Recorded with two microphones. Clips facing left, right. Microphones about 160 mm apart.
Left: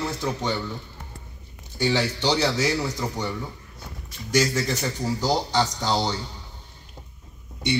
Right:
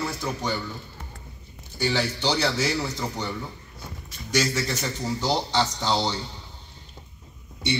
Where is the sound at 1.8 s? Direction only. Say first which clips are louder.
Left 2 dB; 15° left (ahead or behind).